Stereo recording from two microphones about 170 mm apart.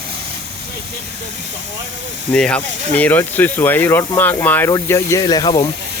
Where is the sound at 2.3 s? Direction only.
5° left (ahead or behind).